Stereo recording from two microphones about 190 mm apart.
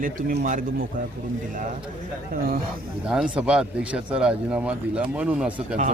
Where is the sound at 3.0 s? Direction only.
5° right (ahead or behind).